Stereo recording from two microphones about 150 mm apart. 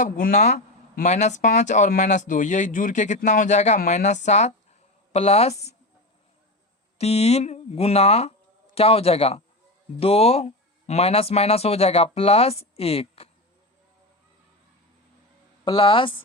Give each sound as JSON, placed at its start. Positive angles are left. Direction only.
{"t": 0.0, "sound": "speech", "side_deg": 60}
{"t": 7.0, "sound": "speech", "side_deg": 45}
{"t": 12.7, "sound": "a sound", "side_deg": 40}
{"t": 15.6, "sound": "speech", "side_deg": 35}